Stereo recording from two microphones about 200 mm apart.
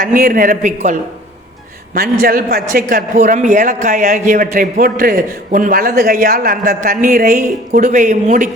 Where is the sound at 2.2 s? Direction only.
50° right (ahead or behind).